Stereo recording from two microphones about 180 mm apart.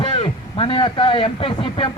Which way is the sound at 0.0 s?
30° left (ahead or behind).